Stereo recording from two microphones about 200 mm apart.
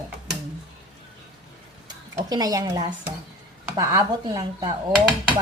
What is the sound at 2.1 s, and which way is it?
Speech, 20° right (ahead or behind).